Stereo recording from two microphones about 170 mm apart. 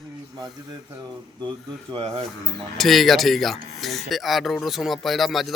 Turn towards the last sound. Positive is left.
turn(degrees=0)  # may be behind; listen again after turning